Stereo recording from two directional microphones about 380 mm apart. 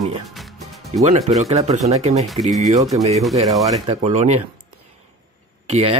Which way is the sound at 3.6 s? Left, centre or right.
Centre.